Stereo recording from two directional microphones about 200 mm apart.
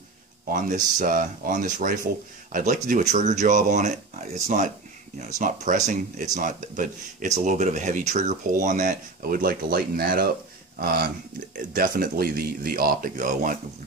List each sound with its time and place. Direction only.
0.5 s speech: 40° right (ahead or behind)